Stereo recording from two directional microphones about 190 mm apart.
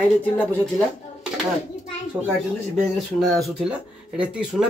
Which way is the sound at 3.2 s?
Centre (ahead or behind).